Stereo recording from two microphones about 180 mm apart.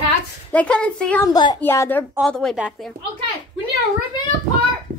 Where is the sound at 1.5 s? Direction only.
15° left (ahead or behind).